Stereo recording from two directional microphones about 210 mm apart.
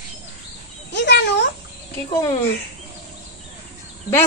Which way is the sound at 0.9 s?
55° left (ahead or behind).